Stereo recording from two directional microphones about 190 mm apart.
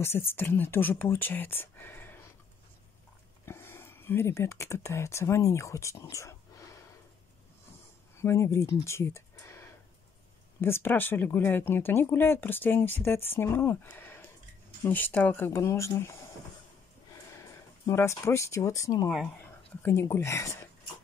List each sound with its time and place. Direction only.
0.3 s speech: 10° left (ahead or behind)
3.4 s speech: 15° left (ahead or behind)
8.2 s speech: 15° left (ahead or behind)
17.3 s speech: 15° left (ahead or behind)